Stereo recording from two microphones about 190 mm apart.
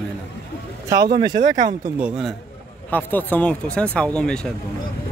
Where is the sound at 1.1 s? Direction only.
20° right (ahead or behind).